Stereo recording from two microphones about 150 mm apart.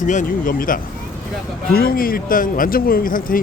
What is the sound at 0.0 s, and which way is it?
Speech, 55° left (ahead or behind).